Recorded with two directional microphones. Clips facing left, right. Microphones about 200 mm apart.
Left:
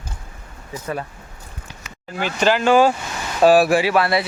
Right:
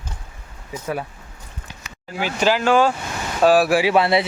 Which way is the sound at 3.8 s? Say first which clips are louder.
Right 1 dB; 25° right (ahead or behind).